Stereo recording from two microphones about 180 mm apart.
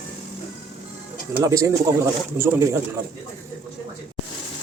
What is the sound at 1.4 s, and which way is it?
Speech, 20° right (ahead or behind).